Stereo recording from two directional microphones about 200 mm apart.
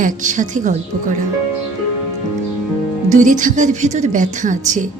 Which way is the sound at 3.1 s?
40° right (ahead or behind).